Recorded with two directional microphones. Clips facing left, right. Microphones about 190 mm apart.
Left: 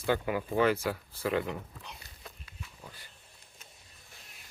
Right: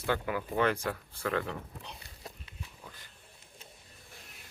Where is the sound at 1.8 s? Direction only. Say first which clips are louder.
Right 2 dB; 30° right (ahead or behind).